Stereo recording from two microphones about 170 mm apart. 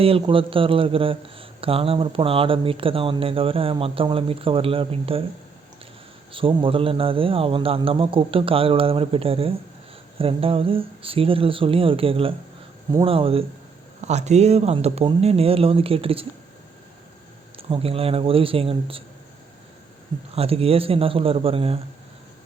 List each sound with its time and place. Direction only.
0.0 s a man's voice: 30° right (ahead or behind)
6.3 s a man's voice: 30° right (ahead or behind)
17.6 s a man's voice: 35° right (ahead or behind)
20.3 s a man's voice: 35° right (ahead or behind)